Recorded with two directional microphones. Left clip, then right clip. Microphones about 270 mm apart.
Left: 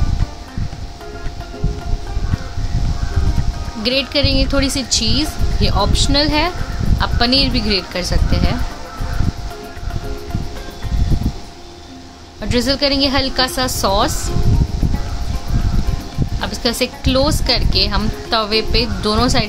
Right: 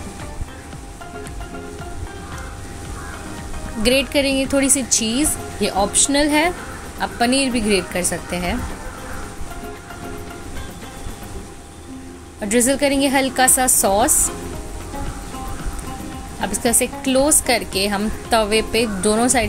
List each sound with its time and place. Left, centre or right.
3.8 s speech: centre
12.4 s speech: centre
16.3 s speech: centre